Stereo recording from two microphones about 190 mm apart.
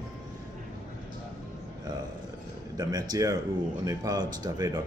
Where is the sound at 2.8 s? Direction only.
20° right (ahead or behind).